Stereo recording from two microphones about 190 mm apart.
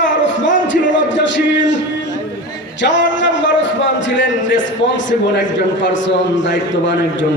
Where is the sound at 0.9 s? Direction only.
75° left (ahead or behind).